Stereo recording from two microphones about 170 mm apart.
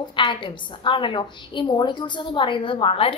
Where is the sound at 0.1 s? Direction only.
30° left (ahead or behind).